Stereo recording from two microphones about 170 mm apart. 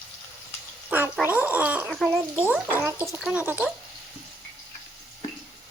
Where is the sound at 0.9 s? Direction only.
10° right (ahead or behind).